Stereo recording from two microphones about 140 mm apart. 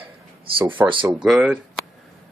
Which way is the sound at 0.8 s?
35° right (ahead or behind).